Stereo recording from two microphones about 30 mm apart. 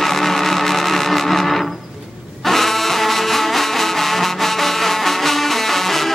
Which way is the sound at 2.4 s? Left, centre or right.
Centre.